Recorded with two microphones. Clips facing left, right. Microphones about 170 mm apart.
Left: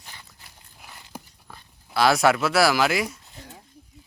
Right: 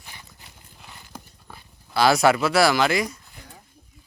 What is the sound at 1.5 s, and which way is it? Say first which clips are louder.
Dog: right 1 dB; centre (ahead or behind).